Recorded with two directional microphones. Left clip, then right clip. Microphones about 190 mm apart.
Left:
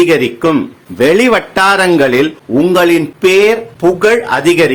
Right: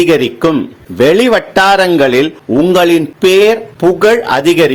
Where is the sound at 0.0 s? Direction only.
25° right (ahead or behind).